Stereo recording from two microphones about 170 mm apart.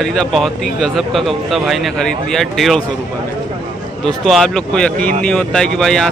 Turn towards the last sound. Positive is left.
turn(degrees=5)  # may be behind; listen again after turning